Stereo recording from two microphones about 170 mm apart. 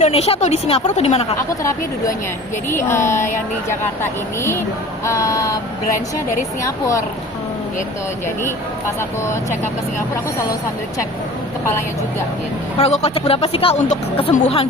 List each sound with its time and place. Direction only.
0.0 s speech: 35° left (ahead or behind)
2.8 s speech: 15° left (ahead or behind)
6.6 s speech: 20° left (ahead or behind)
12.8 s speech: 35° left (ahead or behind)